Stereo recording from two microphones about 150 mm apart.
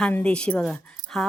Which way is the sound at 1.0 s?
60° right (ahead or behind).